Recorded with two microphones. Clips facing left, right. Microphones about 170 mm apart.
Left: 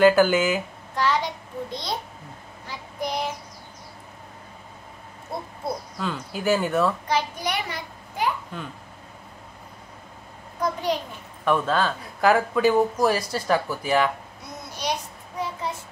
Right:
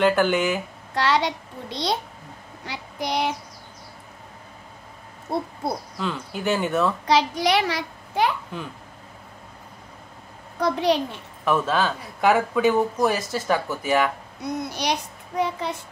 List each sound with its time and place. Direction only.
0.0 s speech: 5° left (ahead or behind)
0.9 s a child's voice: 80° right
2.6 s child singing: 85° right
5.3 s owl: 35° right (ahead or behind)
5.9 s speech: centre (ahead or behind)
7.1 s a child's voice: 90° right
10.6 s a child's voice: 80° right
11.4 s speech: 5° right (ahead or behind)
14.7 s a child's voice: 75° right (ahead or behind)